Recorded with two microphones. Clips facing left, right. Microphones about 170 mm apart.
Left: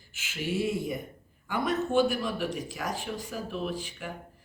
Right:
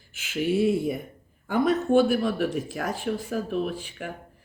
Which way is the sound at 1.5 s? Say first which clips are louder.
Right 6 dB; 50° right (ahead or behind).